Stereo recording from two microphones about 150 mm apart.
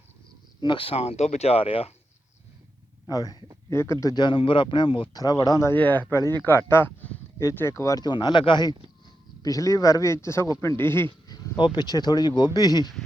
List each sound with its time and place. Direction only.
0.6 s speech: 35° left (ahead or behind)
3.1 s speech: 25° left (ahead or behind)
4.0 s speech: 30° left (ahead or behind)
11.3 s speech: 30° left (ahead or behind)